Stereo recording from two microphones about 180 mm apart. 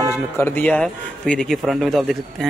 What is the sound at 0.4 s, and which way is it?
A man's voice, 10° left (ahead or behind).